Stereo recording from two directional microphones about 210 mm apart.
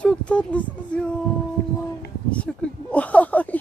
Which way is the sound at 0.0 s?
5° left (ahead or behind).